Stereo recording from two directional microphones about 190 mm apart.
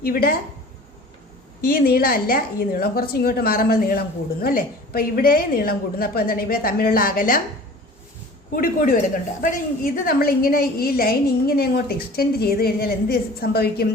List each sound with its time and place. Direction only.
0.0 s a woman's voice: 50° left (ahead or behind)
1.6 s a woman's voice: 50° left (ahead or behind)
8.5 s a woman's voice: 45° left (ahead or behind)